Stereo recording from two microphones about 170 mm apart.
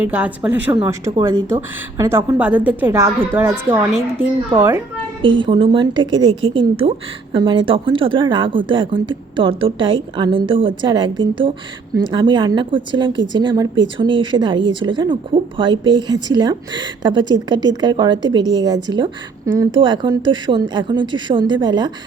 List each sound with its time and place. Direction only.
0.0 s a woman's voice: 10° right (ahead or behind)
5.2 s a woman's voice: 30° right (ahead or behind)